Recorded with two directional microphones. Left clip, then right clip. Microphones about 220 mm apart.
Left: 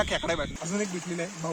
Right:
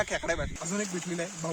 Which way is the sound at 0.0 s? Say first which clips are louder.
Left 2 dB; 5° right (ahead or behind).